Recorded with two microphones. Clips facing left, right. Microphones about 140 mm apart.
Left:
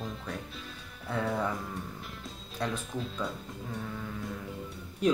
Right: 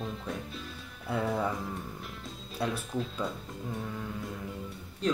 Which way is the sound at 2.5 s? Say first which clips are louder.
Right 2 dB; 5° right (ahead or behind).